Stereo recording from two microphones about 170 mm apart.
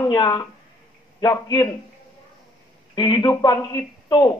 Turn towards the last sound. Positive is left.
turn(degrees=25)  # may be behind; listen again after turning